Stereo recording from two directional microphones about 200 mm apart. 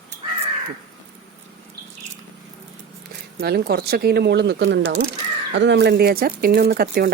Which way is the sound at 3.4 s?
50° right (ahead or behind).